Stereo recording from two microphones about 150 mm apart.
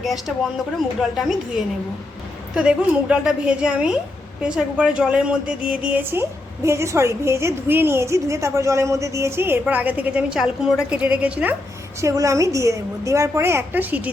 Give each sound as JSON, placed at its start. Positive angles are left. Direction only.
{"t": 0.0, "sound": "speech", "side_deg": 0}
{"t": 2.6, "sound": "a woman's voice", "side_deg": -5}
{"t": 11.9, "sound": "a woman's voice", "side_deg": -20}